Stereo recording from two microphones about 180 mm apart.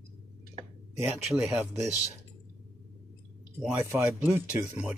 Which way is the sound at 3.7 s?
10° right (ahead or behind).